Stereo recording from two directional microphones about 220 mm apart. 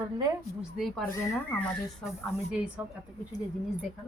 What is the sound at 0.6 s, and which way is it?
Speech, centre (ahead or behind).